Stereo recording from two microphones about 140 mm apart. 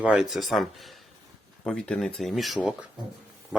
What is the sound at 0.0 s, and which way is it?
Speech, 5° right (ahead or behind).